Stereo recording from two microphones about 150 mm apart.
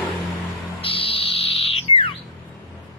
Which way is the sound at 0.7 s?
40° left (ahead or behind).